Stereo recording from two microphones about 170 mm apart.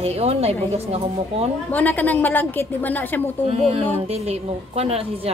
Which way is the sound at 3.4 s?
35° right (ahead or behind).